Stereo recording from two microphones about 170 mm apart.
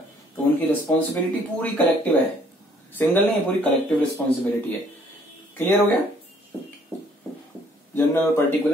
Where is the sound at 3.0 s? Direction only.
10° left (ahead or behind).